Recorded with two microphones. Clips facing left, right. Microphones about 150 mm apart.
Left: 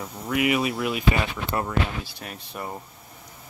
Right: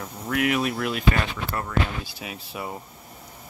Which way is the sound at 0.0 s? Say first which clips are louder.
Left 1 dB; 5° left (ahead or behind).